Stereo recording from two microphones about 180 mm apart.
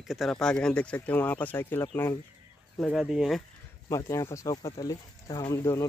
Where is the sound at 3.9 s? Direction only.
15° left (ahead or behind).